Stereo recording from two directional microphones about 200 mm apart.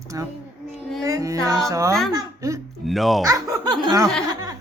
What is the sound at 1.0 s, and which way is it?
Speech, 15° right (ahead or behind).